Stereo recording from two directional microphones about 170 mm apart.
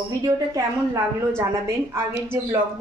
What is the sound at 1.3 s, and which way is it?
A woman's voice, 15° right (ahead or behind).